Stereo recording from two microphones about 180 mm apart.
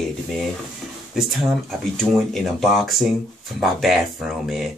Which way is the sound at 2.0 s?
Centre (ahead or behind).